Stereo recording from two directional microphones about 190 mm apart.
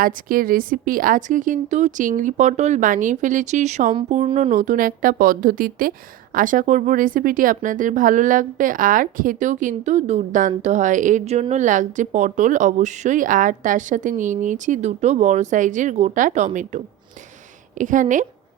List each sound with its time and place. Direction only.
0.0 s a woman's voice: 50° right (ahead or behind)